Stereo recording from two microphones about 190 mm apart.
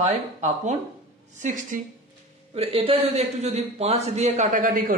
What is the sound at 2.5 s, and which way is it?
Speech, 30° right (ahead or behind).